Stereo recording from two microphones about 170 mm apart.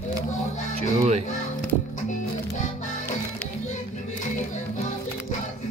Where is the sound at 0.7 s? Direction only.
40° right (ahead or behind).